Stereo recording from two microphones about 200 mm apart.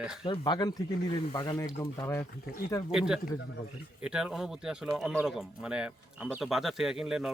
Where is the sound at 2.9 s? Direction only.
5° right (ahead or behind).